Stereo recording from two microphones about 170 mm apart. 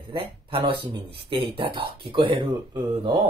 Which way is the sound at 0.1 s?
30° right (ahead or behind).